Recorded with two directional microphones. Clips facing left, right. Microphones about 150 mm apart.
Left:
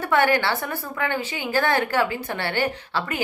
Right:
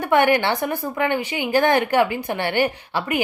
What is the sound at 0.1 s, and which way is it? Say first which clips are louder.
A woman's voice: right 3 dB; 15° right (ahead or behind).